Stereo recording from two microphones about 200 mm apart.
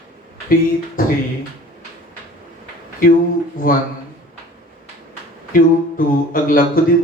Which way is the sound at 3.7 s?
45° left (ahead or behind).